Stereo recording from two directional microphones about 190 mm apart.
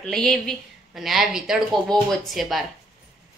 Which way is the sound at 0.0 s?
Centre (ahead or behind).